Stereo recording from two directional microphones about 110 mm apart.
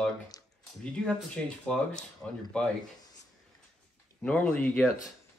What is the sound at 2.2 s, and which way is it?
Speech, 5° left (ahead or behind).